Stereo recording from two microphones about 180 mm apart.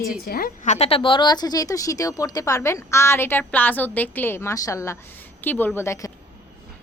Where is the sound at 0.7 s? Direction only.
35° left (ahead or behind).